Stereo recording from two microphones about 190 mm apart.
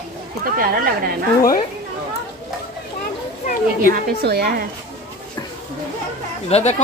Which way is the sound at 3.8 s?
55° right (ahead or behind).